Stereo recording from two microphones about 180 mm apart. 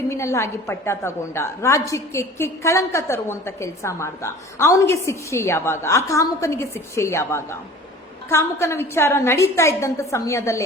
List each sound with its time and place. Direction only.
0.1 s a woman's voice: 15° left (ahead or behind)